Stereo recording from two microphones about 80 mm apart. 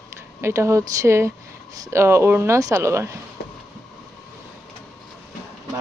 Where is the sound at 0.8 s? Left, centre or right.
Right.